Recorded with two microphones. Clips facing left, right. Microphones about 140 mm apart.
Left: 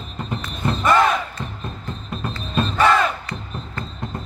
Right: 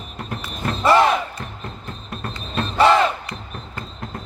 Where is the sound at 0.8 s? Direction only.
30° right (ahead or behind).